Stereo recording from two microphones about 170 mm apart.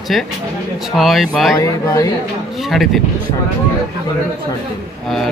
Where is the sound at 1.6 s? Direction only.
20° left (ahead or behind).